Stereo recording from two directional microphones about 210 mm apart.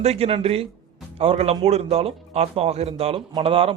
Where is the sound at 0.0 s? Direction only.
30° right (ahead or behind).